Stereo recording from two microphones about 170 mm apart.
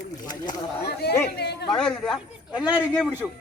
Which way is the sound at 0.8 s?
70° left (ahead or behind).